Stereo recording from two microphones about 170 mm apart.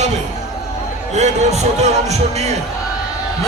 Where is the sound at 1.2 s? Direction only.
40° right (ahead or behind).